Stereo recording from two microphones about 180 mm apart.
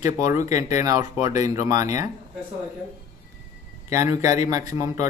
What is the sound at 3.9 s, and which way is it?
Speech, 15° right (ahead or behind).